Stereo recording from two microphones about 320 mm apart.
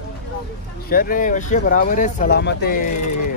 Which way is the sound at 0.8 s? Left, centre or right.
Left.